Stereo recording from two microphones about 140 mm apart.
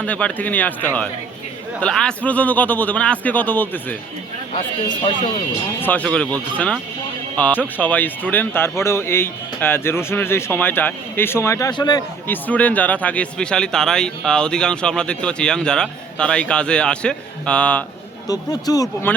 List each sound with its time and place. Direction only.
0.0 s speech: 10° left (ahead or behind)
4.5 s speech: 40° left (ahead or behind)
5.8 s speech: 10° left (ahead or behind); by 12.0 s 30° left (ahead or behind)
12.3 s speech: 10° left (ahead or behind)
18.3 s speech: 25° left (ahead or behind)